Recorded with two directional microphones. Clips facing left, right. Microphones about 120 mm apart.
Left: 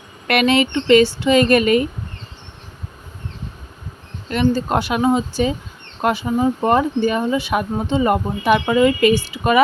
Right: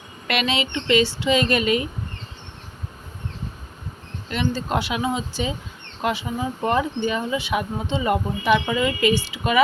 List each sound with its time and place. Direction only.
0.3 s speech: 55° left (ahead or behind)
4.3 s speech: 50° left (ahead or behind)